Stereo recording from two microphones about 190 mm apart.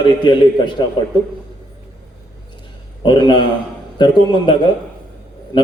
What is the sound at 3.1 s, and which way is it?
A man's voice, 25° left (ahead or behind).